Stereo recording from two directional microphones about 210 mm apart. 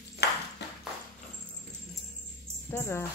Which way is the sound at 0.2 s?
50° left (ahead or behind).